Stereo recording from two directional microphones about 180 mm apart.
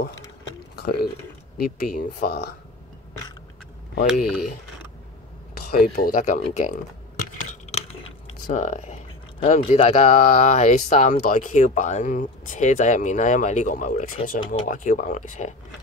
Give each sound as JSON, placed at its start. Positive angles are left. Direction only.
{"t": 0.7, "sound": "a sound", "side_deg": 60}
{"t": 1.8, "sound": "speech", "side_deg": 50}
{"t": 4.1, "sound": "speech", "side_deg": 0}
{"t": 5.7, "sound": "speech", "side_deg": 50}
{"t": 7.7, "sound": "speech", "side_deg": 35}
{"t": 14.4, "sound": "speech", "side_deg": 30}
{"t": 14.7, "sound": "speech", "side_deg": 45}